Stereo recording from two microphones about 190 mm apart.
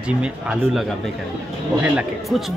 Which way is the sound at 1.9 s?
Centre (ahead or behind).